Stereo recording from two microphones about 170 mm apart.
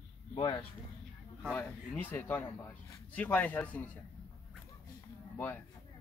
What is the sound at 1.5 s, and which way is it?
Speech, 10° left (ahead or behind).